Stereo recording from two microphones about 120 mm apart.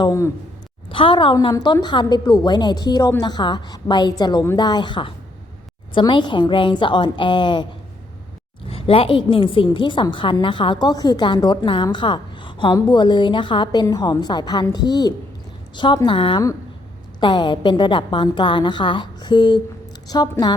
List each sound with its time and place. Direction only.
0.0 s speech: 25° left (ahead or behind)
0.9 s a woman's voice: 45° left (ahead or behind)
8.7 s a woman's voice: 50° left (ahead or behind); by 20.5 s 35° left (ahead or behind)